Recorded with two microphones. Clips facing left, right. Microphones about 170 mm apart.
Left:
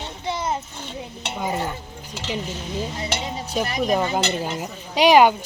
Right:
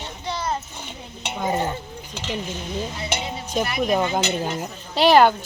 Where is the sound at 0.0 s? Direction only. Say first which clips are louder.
Left 2 dB; 20° left (ahead or behind).